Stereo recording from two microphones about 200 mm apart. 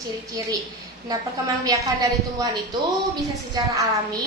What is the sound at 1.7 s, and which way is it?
Speech, 20° right (ahead or behind).